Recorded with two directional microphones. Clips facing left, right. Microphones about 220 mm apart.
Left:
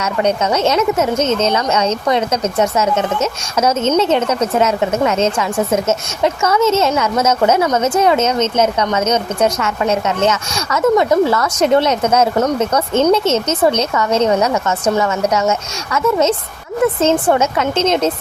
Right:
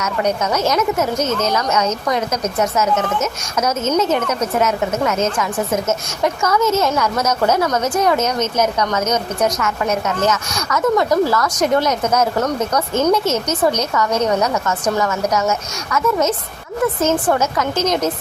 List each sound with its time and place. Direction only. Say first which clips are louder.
0.0 s a woman's voice: left 3 dB; 30° left (ahead or behind)